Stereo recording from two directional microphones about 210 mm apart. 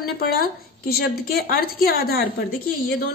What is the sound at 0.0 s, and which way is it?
A woman's voice, 45° left (ahead or behind).